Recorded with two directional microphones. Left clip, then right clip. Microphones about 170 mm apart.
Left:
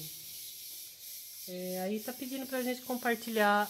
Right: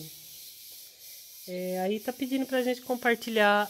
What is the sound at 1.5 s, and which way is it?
Speech, 70° right (ahead or behind).